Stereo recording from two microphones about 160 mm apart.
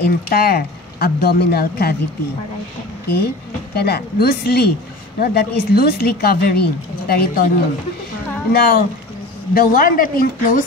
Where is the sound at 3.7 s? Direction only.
90° left.